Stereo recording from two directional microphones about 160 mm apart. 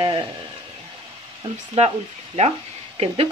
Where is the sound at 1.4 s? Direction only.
35° right (ahead or behind).